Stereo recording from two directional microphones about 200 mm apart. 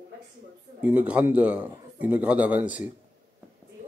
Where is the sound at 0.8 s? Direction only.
5° right (ahead or behind).